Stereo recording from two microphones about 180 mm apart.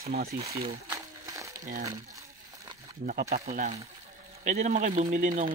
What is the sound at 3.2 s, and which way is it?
Speech, 40° right (ahead or behind).